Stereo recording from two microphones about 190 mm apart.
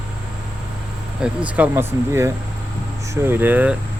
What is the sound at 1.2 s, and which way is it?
Speech, 5° right (ahead or behind).